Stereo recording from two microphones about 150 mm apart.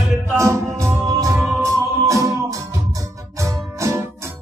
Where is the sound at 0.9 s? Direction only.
20° right (ahead or behind).